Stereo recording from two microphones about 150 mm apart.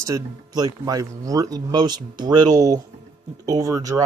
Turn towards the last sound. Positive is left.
turn(degrees=-25)  # may be behind; listen again after turning